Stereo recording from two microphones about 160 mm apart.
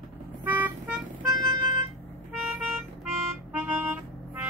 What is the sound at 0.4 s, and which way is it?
Vehicle, 10° right (ahead or behind).